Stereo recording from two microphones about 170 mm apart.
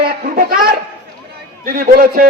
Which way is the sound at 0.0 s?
60° right (ahead or behind).